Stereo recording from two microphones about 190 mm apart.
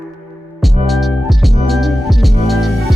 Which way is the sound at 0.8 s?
Centre (ahead or behind).